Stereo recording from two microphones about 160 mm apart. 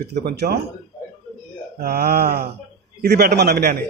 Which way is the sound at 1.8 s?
80° right.